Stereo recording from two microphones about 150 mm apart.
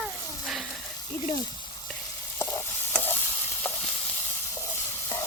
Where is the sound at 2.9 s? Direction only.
15° left (ahead or behind).